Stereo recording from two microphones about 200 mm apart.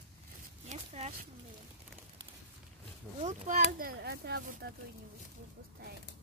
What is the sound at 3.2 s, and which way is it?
Speech, 35° right (ahead or behind).